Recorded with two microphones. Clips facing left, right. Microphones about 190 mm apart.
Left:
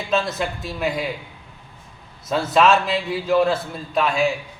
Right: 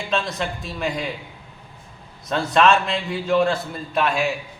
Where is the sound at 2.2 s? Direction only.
5° left (ahead or behind).